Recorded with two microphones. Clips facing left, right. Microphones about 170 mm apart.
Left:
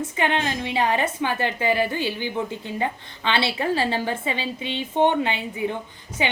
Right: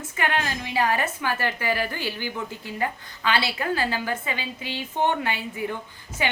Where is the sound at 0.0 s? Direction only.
25° left (ahead or behind).